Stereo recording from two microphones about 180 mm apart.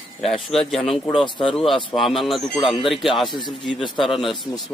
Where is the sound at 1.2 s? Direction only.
25° left (ahead or behind).